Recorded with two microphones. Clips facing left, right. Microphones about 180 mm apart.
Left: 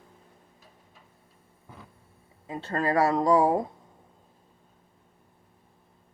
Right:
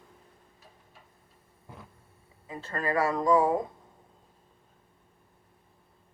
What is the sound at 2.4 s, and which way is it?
Speech, 30° left (ahead or behind).